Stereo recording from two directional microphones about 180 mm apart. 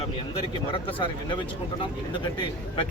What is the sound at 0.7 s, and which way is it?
Speech, 25° left (ahead or behind).